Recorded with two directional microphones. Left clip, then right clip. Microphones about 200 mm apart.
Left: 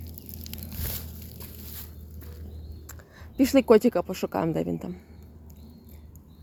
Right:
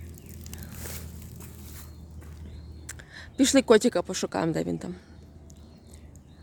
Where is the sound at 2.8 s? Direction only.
5° right (ahead or behind).